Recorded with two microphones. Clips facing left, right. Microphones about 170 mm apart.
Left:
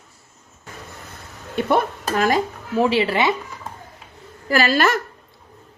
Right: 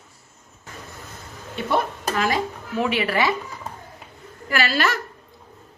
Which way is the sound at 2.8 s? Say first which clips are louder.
Left 4 dB; 30° left (ahead or behind).